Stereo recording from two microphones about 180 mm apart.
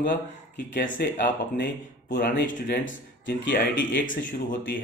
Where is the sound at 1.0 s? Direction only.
60° left (ahead or behind).